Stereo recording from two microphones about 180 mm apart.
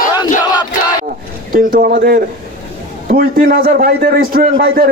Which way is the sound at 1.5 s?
50° right (ahead or behind).